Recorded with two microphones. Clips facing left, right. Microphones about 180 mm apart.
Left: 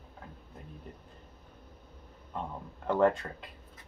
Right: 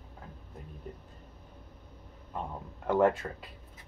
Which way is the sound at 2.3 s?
5° right (ahead or behind).